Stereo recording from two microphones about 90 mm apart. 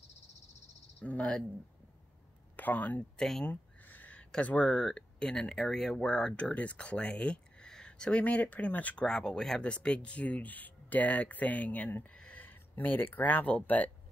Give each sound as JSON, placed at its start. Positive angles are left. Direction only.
{"t": 1.0, "sound": "speech", "side_deg": 15}
{"t": 2.5, "sound": "speech", "side_deg": 20}
{"t": 3.2, "sound": "speech", "side_deg": 5}
{"t": 3.4, "sound": "speech", "side_deg": 20}